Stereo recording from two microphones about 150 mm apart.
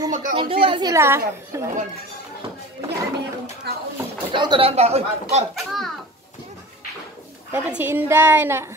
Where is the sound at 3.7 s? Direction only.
90° right.